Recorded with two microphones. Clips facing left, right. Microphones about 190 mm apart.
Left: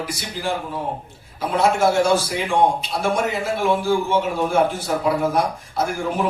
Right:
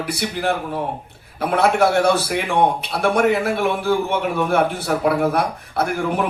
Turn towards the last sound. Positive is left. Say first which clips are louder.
# right 2 dB
turn(degrees=-60)  # may be behind; listen again after turning